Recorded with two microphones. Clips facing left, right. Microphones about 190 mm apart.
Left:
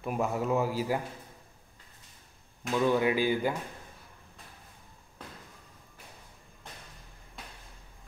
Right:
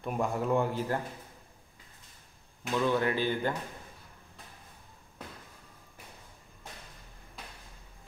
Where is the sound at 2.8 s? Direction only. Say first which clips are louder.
Left 3 dB; 10° left (ahead or behind).